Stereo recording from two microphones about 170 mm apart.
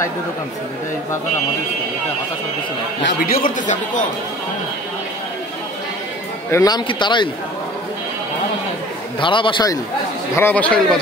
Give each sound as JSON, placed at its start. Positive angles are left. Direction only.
{"t": 3.0, "sound": "a man's voice", "side_deg": 90}
{"t": 3.4, "sound": "a man's voice", "side_deg": 50}
{"t": 6.5, "sound": "speech", "side_deg": 20}
{"t": 9.2, "sound": "speech", "side_deg": 30}
{"t": 10.3, "sound": "a man's voice", "side_deg": 10}